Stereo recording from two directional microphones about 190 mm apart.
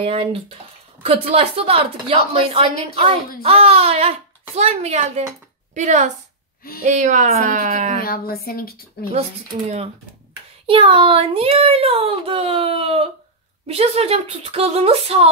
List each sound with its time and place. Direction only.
0.0 s a woman's voice: 30° right (ahead or behind)
8.0 s speech: 50° left (ahead or behind)
10.7 s a child's voice: 30° right (ahead or behind)